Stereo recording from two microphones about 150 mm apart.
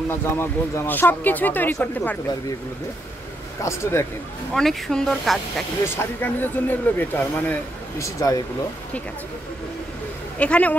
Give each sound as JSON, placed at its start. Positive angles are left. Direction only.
{"t": 0.1, "sound": "speech", "side_deg": 15}
{"t": 3.6, "sound": "speech", "side_deg": 20}
{"t": 4.6, "sound": "speech", "side_deg": 5}
{"t": 5.9, "sound": "speech", "side_deg": 15}
{"t": 8.0, "sound": "speech", "side_deg": 20}
{"t": 10.4, "sound": "speech", "side_deg": 10}